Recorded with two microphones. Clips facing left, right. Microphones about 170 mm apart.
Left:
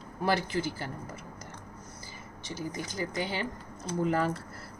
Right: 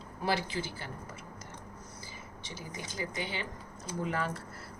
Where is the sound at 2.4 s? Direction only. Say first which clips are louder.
Left 8 dB; 40° left (ahead or behind).